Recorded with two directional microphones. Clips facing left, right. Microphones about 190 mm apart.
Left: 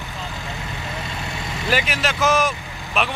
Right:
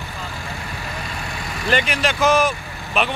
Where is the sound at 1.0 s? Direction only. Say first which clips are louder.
Even; 25° left (ahead or behind).